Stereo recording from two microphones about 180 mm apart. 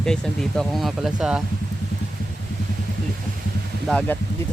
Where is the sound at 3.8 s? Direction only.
5° left (ahead or behind).